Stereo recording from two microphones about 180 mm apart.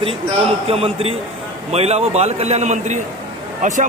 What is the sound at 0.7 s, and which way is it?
A man's voice, 30° right (ahead or behind).